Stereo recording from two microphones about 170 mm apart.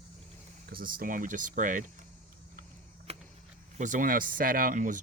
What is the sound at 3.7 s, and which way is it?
Speech, 45° right (ahead or behind).